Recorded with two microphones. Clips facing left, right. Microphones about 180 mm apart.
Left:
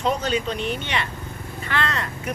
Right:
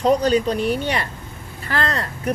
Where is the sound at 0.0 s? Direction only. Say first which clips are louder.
Right 7 dB; 35° right (ahead or behind).